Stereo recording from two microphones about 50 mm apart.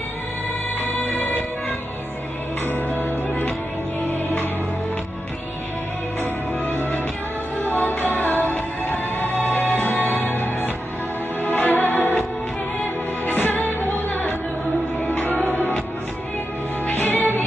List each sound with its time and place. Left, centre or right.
0.7 s music: left
2.6 s music: left
6.6 s music: left
13.2 s music: left
16.8 s music: left